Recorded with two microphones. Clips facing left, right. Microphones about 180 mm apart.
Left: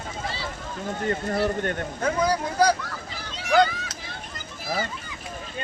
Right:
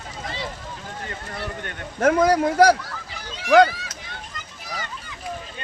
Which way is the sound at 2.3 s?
80° right.